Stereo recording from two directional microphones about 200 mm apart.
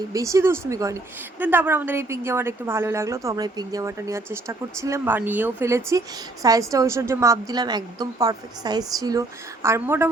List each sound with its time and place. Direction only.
0.1 s a woman's voice: 15° right (ahead or behind)